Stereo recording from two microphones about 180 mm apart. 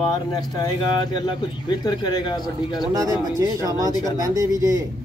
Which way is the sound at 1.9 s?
25° left (ahead or behind).